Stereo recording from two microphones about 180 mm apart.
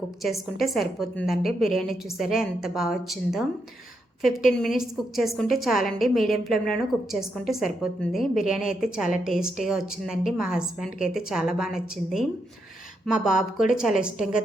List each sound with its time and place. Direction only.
0.6 s a woman's voice: centre (ahead or behind)
13.2 s a woman's voice: 5° right (ahead or behind)